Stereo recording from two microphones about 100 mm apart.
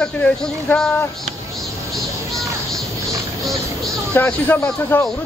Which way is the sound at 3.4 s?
Centre (ahead or behind).